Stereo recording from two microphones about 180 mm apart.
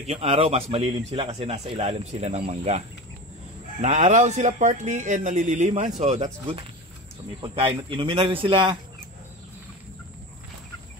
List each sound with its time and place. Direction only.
0.0 s a man's voice: 35° right (ahead or behind)
3.8 s a man's voice: 40° right (ahead or behind)
7.4 s speech: 30° right (ahead or behind)